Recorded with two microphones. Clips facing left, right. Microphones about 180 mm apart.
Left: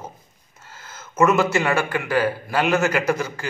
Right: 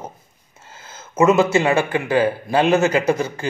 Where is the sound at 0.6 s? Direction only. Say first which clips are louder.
Right 1 dB; 25° right (ahead or behind).